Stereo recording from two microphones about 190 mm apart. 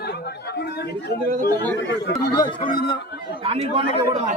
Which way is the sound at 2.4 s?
25° left (ahead or behind).